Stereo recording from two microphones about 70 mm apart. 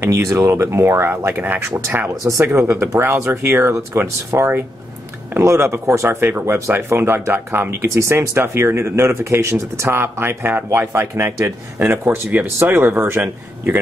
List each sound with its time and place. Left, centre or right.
0.0 s speech: right